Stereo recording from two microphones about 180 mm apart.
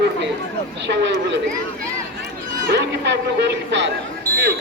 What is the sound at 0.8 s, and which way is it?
Speech, 75° right (ahead or behind).